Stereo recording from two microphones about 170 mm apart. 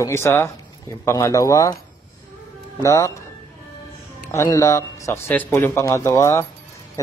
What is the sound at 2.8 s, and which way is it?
Speech, 15° left (ahead or behind).